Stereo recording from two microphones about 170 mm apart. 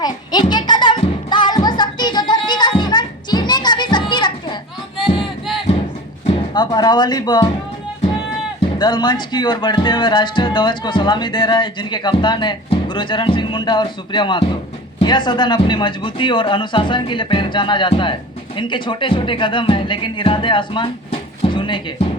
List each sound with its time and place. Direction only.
0.0 s a child's voice: 25° left (ahead or behind)
0.5 s music: 25° left (ahead or behind)
4.9 s a sound: centre (ahead or behind)
6.5 s speech: 25° left (ahead or behind)
8.8 s speech: 25° left (ahead or behind)